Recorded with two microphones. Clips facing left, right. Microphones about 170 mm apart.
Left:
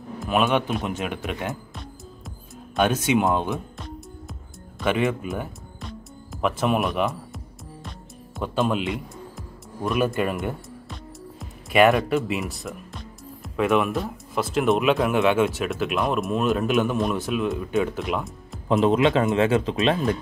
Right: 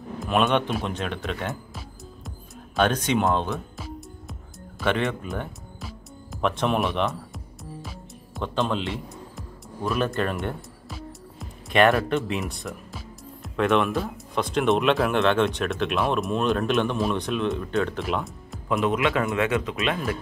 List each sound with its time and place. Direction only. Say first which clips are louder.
0.2 s speech: even; 5° left (ahead or behind)
1.5 s music: left 1 dB; centre (ahead or behind)
8.4 s speech: left 2 dB; 10° left (ahead or behind)
9.8 s music: left 2 dB; 5° left (ahead or behind)
12.0 s speech: left 1 dB; centre (ahead or behind)
18.7 s a man's voice: left 4 dB; 30° left (ahead or behind)